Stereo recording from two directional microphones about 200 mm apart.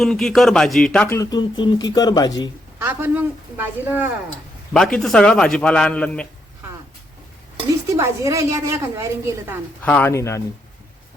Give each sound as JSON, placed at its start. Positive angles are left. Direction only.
{"t": 0.0, "sound": "speech", "side_deg": 0}
{"t": 2.7, "sound": "a woman's voice", "side_deg": -10}
{"t": 4.7, "sound": "a man's voice", "side_deg": 0}
{"t": 7.9, "sound": "a woman's voice", "side_deg": -15}
{"t": 9.8, "sound": "speech", "side_deg": 10}